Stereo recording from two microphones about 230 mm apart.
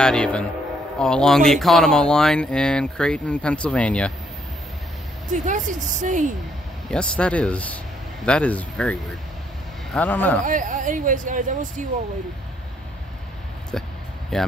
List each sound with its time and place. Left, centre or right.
0.0 s speech: centre
5.3 s speech: right
6.9 s speech: centre
9.9 s a man's voice: centre
10.4 s speech: right
14.3 s speech: centre